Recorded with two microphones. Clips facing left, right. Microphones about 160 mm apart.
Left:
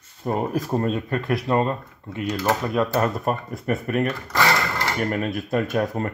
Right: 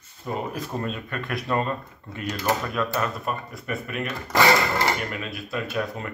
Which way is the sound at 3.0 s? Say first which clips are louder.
Left 5 dB; 45° left (ahead or behind).